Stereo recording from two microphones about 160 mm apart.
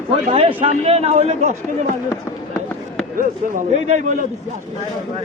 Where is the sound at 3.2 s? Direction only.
50° right (ahead or behind).